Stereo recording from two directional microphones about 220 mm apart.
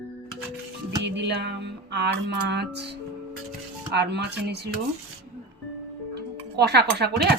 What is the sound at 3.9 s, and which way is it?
Music, 50° right (ahead or behind).